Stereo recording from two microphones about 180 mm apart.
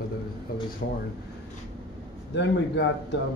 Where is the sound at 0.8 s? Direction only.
65° left (ahead or behind).